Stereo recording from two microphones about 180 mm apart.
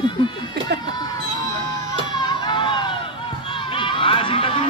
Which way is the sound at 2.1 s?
25° left (ahead or behind).